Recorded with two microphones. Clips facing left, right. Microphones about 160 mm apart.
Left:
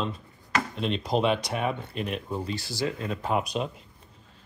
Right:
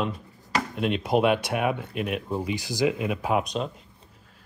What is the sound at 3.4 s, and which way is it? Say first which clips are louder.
Speech: right 1 dB; 5° left (ahead or behind).